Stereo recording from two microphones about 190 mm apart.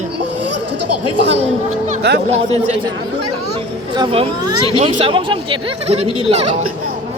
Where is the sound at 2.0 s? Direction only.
60° right (ahead or behind).